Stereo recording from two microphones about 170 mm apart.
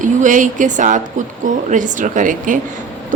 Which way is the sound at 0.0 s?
50° right (ahead or behind).